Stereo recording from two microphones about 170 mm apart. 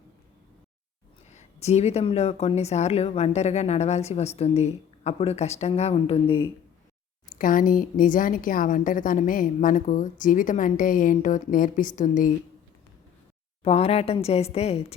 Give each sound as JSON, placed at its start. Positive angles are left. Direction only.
{"t": 1.3, "sound": "speech", "side_deg": 40}
{"t": 7.3, "sound": "a woman's voice", "side_deg": 55}
{"t": 13.7, "sound": "speech", "side_deg": 35}